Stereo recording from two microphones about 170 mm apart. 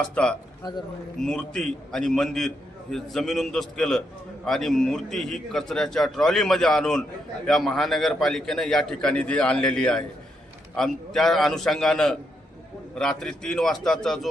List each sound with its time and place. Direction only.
0.0 s a man's voice: 5° left (ahead or behind)